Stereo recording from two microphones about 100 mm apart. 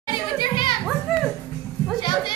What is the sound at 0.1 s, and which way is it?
Children playing, 55° left (ahead or behind).